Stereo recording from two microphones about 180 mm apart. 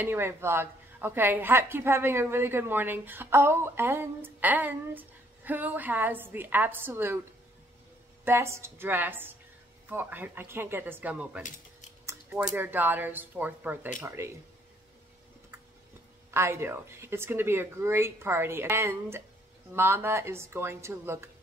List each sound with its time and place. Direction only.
0.0 s a woman's voice: 15° right (ahead or behind)
8.3 s a woman's voice: 15° right (ahead or behind)
16.3 s a woman's voice: 15° right (ahead or behind)